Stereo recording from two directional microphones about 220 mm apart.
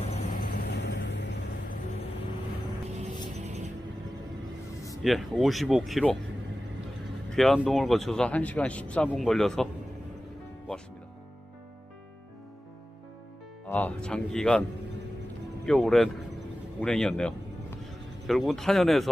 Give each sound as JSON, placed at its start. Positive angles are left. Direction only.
{"t": 0.1, "sound": "vehicle", "side_deg": 40}
{"t": 0.8, "sound": "vehicle", "side_deg": 55}
{"t": 3.3, "sound": "music", "side_deg": -30}
{"t": 5.0, "sound": "speech", "side_deg": 0}
{"t": 7.2, "sound": "speech", "side_deg": 0}
{"t": 13.7, "sound": "speech", "side_deg": 5}
{"t": 15.6, "sound": "speech", "side_deg": 0}